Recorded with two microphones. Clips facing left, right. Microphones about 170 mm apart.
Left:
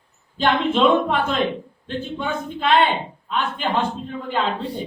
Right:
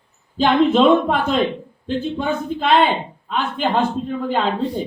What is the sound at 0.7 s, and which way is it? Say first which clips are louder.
A man's voice: right 3 dB; 40° right (ahead or behind).